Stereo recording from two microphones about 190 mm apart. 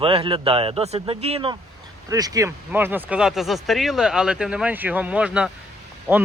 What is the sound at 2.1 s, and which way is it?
Speech, 20° right (ahead or behind).